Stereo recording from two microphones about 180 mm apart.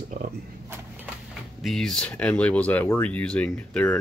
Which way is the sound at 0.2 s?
55° right (ahead or behind).